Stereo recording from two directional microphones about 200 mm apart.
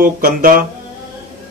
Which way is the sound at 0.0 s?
45° right (ahead or behind).